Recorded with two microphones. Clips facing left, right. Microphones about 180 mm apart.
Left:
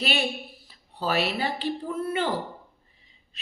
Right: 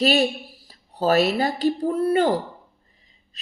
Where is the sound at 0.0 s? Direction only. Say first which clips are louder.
Right 8 dB; 40° right (ahead or behind).